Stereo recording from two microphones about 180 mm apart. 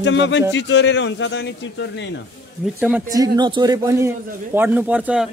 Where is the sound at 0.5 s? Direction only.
80° left.